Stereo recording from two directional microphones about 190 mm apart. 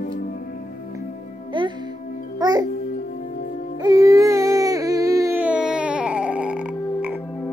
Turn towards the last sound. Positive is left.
turn(degrees=-5)  # may be behind; listen again after turning